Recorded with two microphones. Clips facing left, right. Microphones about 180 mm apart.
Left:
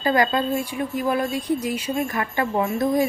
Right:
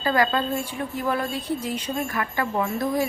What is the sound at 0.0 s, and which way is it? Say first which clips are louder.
A woman's voice: left 2 dB; 20° left (ahead or behind).